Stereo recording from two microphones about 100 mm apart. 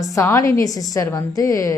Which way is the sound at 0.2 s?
35° left (ahead or behind).